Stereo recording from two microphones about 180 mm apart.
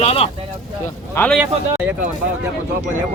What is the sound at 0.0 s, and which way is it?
Speech, 35° left (ahead or behind).